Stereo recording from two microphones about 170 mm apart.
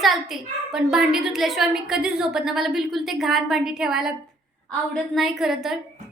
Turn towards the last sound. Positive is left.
turn(degrees=0)  # may be behind; listen again after turning